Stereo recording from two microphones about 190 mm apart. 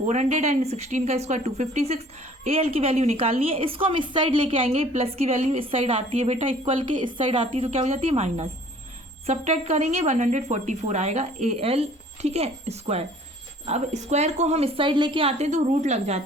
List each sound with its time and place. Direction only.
0.0 s a woman's voice: 40° right (ahead or behind)